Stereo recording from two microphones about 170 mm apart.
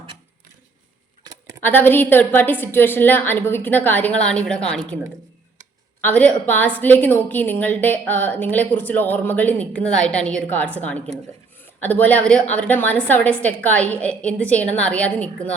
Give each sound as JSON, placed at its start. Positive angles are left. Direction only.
{"t": 1.2, "sound": "a sound", "side_deg": -20}
{"t": 1.6, "sound": "a woman's voice", "side_deg": 10}
{"t": 6.0, "sound": "a woman's voice", "side_deg": 10}